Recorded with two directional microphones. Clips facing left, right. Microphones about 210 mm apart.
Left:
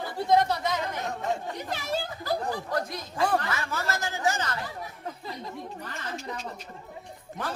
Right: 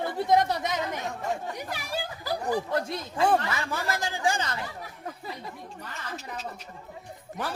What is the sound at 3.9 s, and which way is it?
Speech, 15° right (ahead or behind).